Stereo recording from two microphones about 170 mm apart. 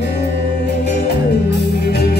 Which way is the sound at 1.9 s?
75° left (ahead or behind).